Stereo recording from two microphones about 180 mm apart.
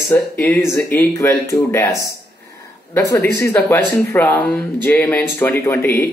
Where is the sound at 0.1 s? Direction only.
10° left (ahead or behind).